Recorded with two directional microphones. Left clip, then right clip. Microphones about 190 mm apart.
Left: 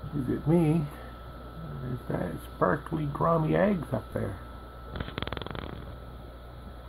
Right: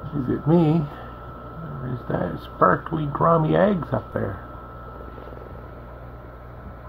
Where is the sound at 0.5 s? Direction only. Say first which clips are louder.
Right 7 dB; 5° right (ahead or behind).